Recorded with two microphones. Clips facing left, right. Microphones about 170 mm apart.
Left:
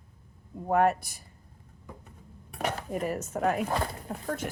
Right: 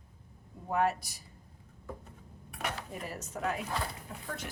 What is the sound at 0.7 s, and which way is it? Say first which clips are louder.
Speech: left 6 dB; 55° left (ahead or behind).